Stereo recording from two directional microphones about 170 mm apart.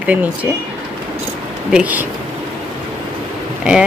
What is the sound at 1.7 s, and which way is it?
Speech, 5° right (ahead or behind).